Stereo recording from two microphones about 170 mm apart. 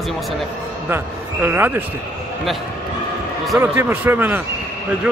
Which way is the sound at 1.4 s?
15° right (ahead or behind).